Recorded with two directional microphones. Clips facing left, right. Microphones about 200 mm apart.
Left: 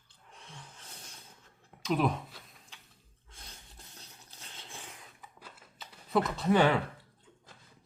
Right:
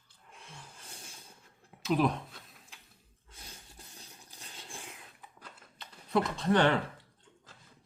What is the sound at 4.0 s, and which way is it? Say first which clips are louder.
Dog: right 1 dB; 10° right (ahead or behind).